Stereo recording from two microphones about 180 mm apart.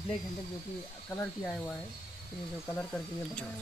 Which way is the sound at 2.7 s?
10° left (ahead or behind).